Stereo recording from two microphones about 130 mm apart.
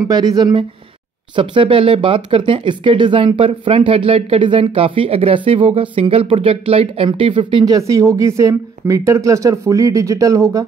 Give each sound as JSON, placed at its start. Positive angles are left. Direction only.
{"t": 0.1, "sound": "speech", "side_deg": -35}